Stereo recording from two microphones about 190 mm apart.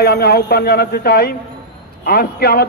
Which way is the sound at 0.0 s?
55° left (ahead or behind).